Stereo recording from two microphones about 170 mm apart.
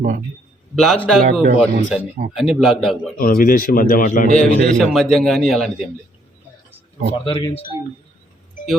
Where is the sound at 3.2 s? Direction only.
60° left (ahead or behind).